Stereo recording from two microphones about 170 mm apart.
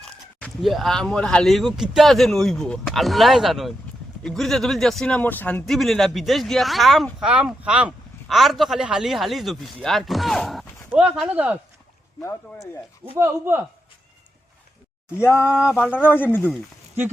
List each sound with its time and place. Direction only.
0.0 s speech: 5° left (ahead or behind)
13.1 s speech: 15° right (ahead or behind)
15.1 s a sound: 15° left (ahead or behind)